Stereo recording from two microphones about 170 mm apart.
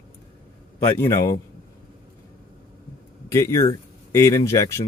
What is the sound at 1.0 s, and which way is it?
Speech, 20° left (ahead or behind).